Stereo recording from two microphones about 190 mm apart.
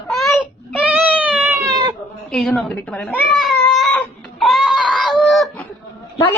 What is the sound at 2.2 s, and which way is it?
Cat, centre (ahead or behind).